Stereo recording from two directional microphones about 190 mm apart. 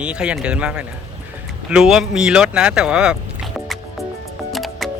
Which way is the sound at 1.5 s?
5° right (ahead or behind).